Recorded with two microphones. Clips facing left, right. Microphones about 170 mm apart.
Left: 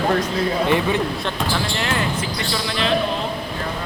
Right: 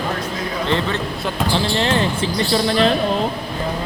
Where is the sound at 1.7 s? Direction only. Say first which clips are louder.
Right 4 dB; 30° right (ahead or behind).